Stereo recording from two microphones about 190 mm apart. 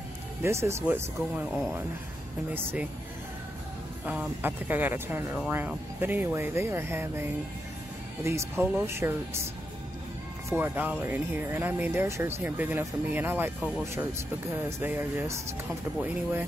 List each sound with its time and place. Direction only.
0.4 s speech: 15° right (ahead or behind)
2.5 s speech: 10° right (ahead or behind)
4.0 s speech: 10° right (ahead or behind)
10.5 s speech: 10° right (ahead or behind)